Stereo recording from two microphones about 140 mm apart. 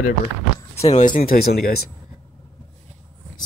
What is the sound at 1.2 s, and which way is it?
Speech, 90° left.